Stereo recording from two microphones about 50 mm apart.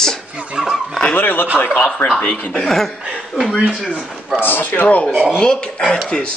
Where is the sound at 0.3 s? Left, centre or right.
Right.